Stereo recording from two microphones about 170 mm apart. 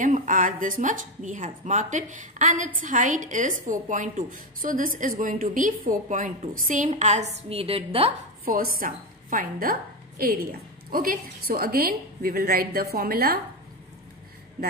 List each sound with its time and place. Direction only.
0.0 s speech: 50° right (ahead or behind)
8.5 s a woman's voice: 55° right (ahead or behind)